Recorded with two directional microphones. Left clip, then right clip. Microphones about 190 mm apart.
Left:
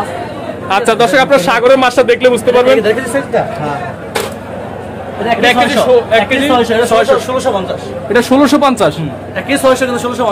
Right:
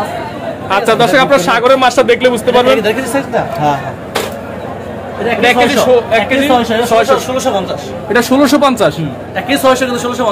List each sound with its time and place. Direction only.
0.7 s speech: 15° left (ahead or behind)
2.8 s speech: 10° right (ahead or behind)
5.4 s a man's voice: 5° left (ahead or behind)